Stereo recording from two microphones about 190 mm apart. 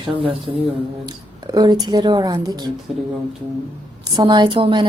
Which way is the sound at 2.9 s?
5° right (ahead or behind).